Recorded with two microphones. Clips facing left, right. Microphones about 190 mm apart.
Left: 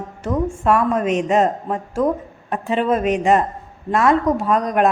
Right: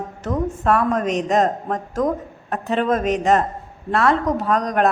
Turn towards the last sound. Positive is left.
turn(degrees=10)  # may be behind; listen again after turning